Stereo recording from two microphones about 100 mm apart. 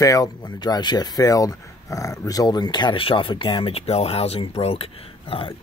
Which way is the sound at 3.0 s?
60° left (ahead or behind).